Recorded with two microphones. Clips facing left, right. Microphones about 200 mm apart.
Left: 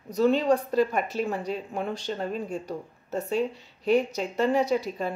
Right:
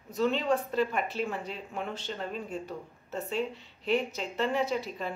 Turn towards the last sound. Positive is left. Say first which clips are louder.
# left 6 dB
turn(degrees=40)  # may be behind; listen again after turning